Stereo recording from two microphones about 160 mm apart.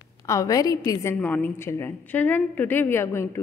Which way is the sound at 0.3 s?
20° left (ahead or behind).